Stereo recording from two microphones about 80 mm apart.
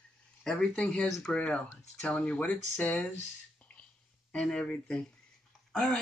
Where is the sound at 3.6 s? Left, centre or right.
Centre.